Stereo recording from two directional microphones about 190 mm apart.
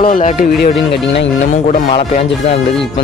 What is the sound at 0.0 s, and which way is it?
Speech, 45° left (ahead or behind).